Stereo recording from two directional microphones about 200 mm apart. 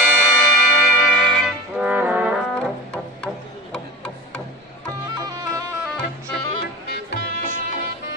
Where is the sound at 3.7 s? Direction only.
5° left (ahead or behind).